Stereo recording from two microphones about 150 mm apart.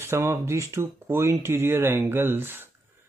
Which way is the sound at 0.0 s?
15° right (ahead or behind).